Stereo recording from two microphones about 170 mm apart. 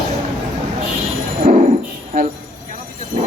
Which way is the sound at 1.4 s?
45° right (ahead or behind).